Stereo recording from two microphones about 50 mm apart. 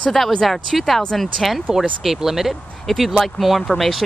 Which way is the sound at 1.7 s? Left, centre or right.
Centre.